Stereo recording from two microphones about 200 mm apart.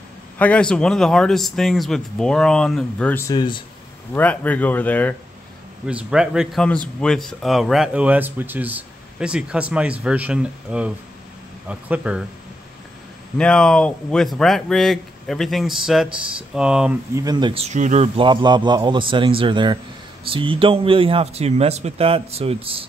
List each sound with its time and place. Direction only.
0.4 s speech: 5° left (ahead or behind)
4.1 s speech: 10° left (ahead or behind)
5.9 s speech: 5° right (ahead or behind)
13.4 s speech: 5° left (ahead or behind)
17.1 s a man's voice: 20° right (ahead or behind)